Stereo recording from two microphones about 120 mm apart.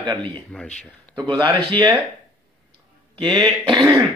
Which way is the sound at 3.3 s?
35° right (ahead or behind).